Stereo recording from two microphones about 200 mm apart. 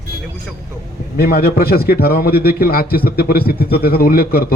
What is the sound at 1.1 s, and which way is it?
A man's voice, 50° left (ahead or behind).